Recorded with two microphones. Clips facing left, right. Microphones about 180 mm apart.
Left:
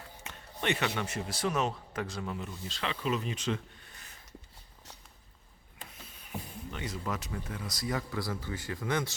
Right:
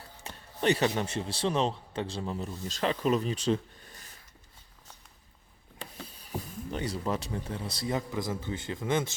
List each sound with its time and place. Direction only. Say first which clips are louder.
0.3 s a sound: right 6 dB; 35° right (ahead or behind)
0.9 s speech: right 3 dB; 30° right (ahead or behind)
5.9 s speech: right 4 dB; 35° right (ahead or behind)